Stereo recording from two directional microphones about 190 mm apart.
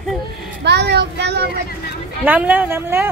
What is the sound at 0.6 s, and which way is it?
Speech, 60° right (ahead or behind).